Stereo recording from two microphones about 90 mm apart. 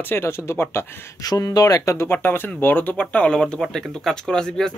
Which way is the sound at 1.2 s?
45° left (ahead or behind).